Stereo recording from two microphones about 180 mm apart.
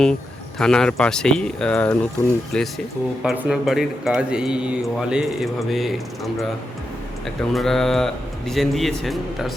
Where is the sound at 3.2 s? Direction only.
5° right (ahead or behind).